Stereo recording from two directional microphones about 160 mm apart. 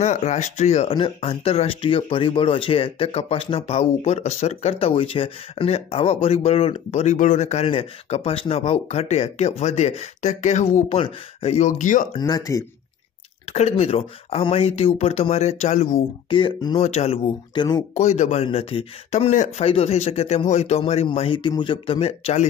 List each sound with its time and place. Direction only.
0.0 s speech: 45° left (ahead or behind)
12.2 s speech: 25° left (ahead or behind)
13.5 s speech: 45° left (ahead or behind)
15.9 s speech: 30° left (ahead or behind)
16.8 s speech: 40° left (ahead or behind)
17.6 s speech: 25° left (ahead or behind)
17.9 s speech: 45° left (ahead or behind)